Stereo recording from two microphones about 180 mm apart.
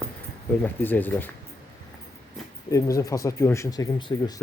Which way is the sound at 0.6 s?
10° left (ahead or behind).